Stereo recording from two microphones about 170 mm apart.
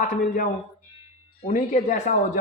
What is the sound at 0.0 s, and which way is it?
Speech, 50° left (ahead or behind).